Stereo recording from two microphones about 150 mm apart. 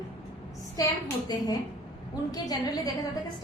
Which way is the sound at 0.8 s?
25° left (ahead or behind).